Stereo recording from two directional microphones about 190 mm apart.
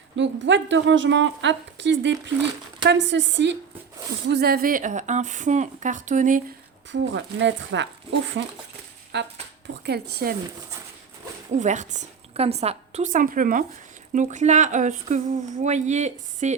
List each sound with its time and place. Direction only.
0.2 s a woman's voice: 75° right (ahead or behind)
4.3 s speech: 55° right (ahead or behind)
6.9 s a woman's voice: 75° right (ahead or behind)
9.1 s a woman's voice: 65° right (ahead or behind)
11.5 s speech: 40° right (ahead or behind)